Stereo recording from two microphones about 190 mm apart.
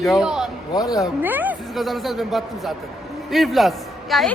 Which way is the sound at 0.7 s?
20° left (ahead or behind).